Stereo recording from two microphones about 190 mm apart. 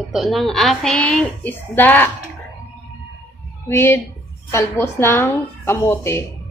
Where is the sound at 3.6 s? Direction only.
10° left (ahead or behind).